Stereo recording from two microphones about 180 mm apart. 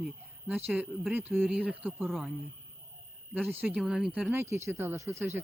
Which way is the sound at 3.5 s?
10° right (ahead or behind).